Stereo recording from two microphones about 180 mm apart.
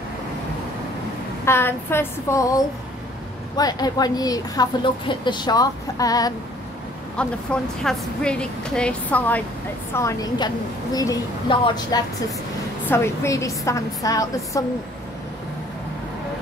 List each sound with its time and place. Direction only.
1.4 s a woman's voice: 15° left (ahead or behind)
7.2 s a woman's voice: 5° left (ahead or behind)
9.9 s speech: 20° left (ahead or behind)
12.8 s a woman's voice: 15° left (ahead or behind)